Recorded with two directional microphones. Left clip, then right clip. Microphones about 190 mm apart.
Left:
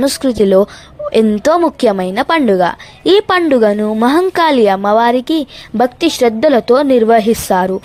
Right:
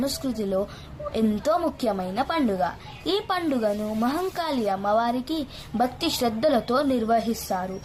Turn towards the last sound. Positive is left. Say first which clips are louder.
# left 16 dB
turn(degrees=55)  # may be behind; listen again after turning